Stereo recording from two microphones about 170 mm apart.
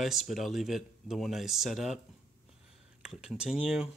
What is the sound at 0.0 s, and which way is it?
Speech, centre (ahead or behind).